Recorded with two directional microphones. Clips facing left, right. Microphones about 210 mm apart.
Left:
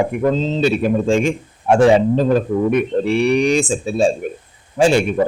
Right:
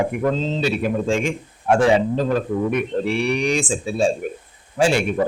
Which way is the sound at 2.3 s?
30° left (ahead or behind).